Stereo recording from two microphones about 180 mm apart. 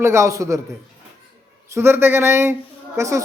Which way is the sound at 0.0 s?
15° right (ahead or behind).